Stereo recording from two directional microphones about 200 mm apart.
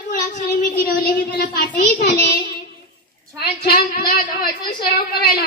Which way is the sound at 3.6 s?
50° left (ahead or behind).